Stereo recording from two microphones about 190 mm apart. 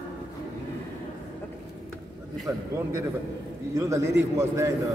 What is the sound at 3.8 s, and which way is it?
Speech, 15° right (ahead or behind).